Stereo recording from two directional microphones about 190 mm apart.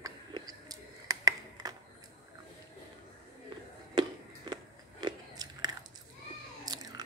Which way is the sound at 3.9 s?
20° right (ahead or behind).